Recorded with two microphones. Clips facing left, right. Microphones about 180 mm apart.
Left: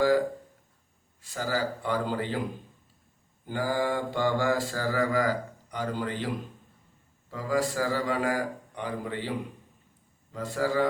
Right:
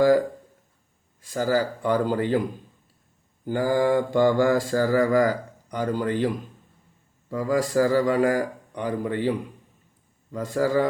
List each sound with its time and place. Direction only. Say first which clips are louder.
1.2 s mantra: right 7 dB; 45° right (ahead or behind)
3.4 s mantra: right 7 dB; 45° right (ahead or behind)
10.3 s mantra: right 5 dB; 45° right (ahead or behind)